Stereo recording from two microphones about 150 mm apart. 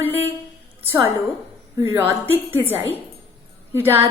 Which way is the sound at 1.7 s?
15° right (ahead or behind).